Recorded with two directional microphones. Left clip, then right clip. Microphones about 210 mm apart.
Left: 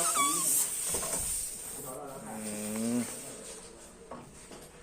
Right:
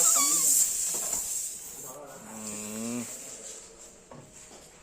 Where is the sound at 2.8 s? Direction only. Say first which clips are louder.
Left 3 dB; 15° right (ahead or behind).